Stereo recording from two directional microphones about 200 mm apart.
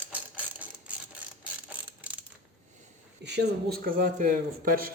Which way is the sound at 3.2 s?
60° right (ahead or behind).